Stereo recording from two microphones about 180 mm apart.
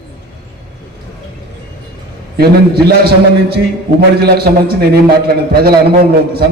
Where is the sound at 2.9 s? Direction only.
60° right (ahead or behind).